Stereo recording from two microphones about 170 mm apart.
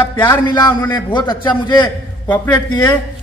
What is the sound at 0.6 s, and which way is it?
Speech, 15° left (ahead or behind).